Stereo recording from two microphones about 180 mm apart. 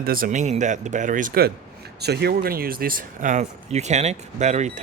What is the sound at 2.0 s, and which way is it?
Speech, 65° right (ahead or behind).